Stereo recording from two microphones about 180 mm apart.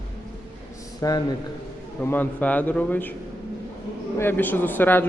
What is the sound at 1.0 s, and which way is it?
A man's voice, 20° left (ahead or behind).